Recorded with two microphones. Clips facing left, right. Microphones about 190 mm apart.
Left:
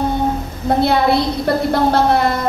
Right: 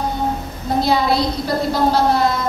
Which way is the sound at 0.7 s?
60° left (ahead or behind).